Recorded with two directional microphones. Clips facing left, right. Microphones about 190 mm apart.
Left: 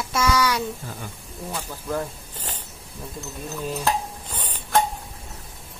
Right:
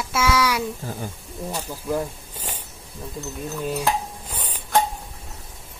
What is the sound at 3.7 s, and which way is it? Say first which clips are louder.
Stir: even; 10° right (ahead or behind).